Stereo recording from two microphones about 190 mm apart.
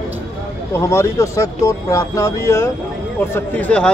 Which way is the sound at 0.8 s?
15° left (ahead or behind).